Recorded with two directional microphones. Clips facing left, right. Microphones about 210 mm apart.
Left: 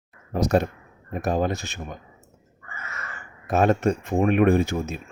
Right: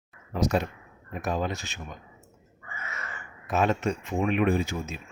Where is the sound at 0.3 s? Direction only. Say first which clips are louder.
Left 5 dB; 45° left (ahead or behind).